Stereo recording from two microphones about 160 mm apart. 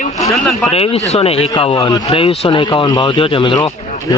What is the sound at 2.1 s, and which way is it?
Speech, 40° left (ahead or behind).